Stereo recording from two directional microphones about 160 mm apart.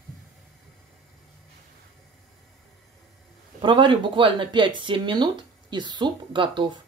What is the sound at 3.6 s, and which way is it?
Speech, 30° right (ahead or behind).